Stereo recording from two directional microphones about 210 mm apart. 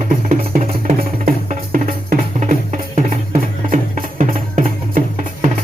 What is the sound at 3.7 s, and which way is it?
Music, 40° right (ahead or behind).